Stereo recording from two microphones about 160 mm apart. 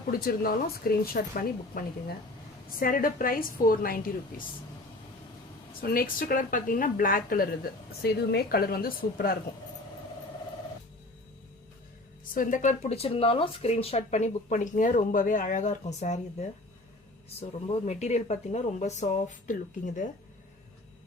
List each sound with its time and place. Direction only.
0.1 s a woman's voice: 70° left (ahead or behind)
5.8 s a woman's voice: 65° left (ahead or behind)
12.3 s speech: 55° left (ahead or behind)